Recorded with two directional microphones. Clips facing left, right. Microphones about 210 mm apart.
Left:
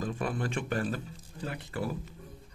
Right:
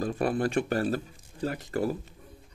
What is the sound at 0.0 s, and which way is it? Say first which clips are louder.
Speech: right 6 dB; 35° right (ahead or behind).